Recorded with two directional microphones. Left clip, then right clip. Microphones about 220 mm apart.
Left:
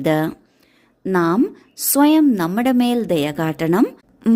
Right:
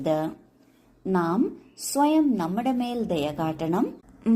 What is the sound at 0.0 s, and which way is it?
A woman's voice, 45° left (ahead or behind).